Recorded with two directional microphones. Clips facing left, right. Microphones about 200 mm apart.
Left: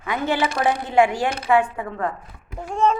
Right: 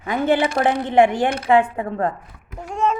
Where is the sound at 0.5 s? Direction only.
50° right (ahead or behind).